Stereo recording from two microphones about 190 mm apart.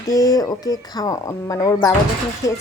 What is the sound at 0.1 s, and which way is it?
Speech, 20° left (ahead or behind).